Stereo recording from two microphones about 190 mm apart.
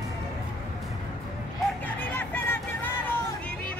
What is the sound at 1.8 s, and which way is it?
Music, 10° left (ahead or behind).